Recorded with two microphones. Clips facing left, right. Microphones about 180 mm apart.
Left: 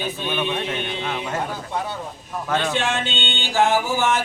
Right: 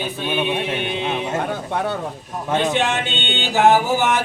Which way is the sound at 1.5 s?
60° right (ahead or behind).